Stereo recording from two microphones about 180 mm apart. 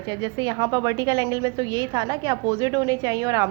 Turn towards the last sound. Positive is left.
turn(degrees=-20)  # may be behind; listen again after turning